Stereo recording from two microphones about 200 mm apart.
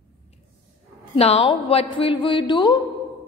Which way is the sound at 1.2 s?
30° left (ahead or behind).